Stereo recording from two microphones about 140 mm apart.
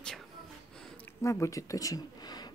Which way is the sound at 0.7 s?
5° left (ahead or behind).